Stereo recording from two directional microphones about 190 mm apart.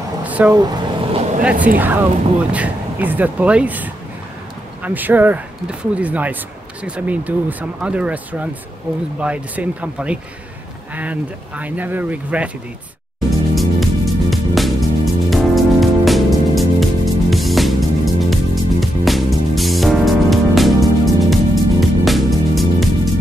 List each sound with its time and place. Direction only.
0.2 s a sound: 10° right (ahead or behind)
0.7 s vehicle: 30° right (ahead or behind)
1.4 s speech: 5° right (ahead or behind)
13.6 s music: centre (ahead or behind)